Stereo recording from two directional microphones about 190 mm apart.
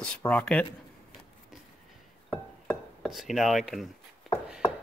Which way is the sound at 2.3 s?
5° left (ahead or behind).